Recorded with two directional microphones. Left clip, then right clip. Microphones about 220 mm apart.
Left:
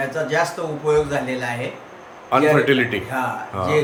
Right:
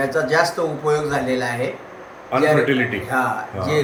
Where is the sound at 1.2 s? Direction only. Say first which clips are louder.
Right 4 dB; 5° left (ahead or behind).